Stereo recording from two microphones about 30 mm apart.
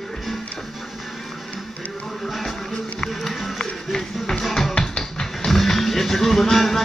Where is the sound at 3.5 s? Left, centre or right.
Centre.